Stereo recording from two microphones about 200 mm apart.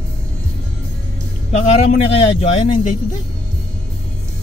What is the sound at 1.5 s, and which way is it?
A man's voice, 35° left (ahead or behind).